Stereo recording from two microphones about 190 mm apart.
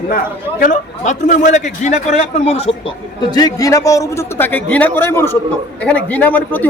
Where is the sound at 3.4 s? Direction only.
20° left (ahead or behind).